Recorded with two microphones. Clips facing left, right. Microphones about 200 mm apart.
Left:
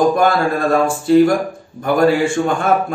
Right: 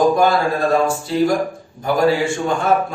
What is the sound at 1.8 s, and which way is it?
Speech, 55° left (ahead or behind).